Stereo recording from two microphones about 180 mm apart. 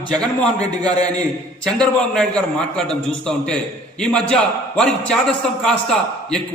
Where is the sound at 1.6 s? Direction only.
5° left (ahead or behind).